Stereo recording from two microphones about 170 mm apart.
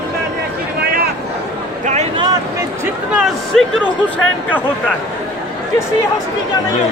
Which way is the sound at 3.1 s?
5° right (ahead or behind).